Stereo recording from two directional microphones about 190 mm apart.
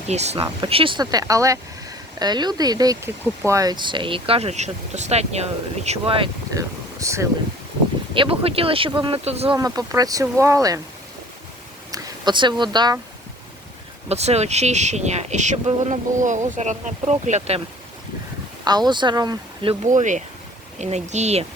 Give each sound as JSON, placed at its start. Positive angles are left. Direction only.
{"t": 0.1, "sound": "speech", "side_deg": -35}
{"t": 8.1, "sound": "speech", "side_deg": -30}
{"t": 9.6, "sound": "speech", "side_deg": -20}
{"t": 11.9, "sound": "speech", "side_deg": -20}
{"t": 14.1, "sound": "speech", "side_deg": -35}
{"t": 18.6, "sound": "speech", "side_deg": -20}
{"t": 19.8, "sound": "speech", "side_deg": -40}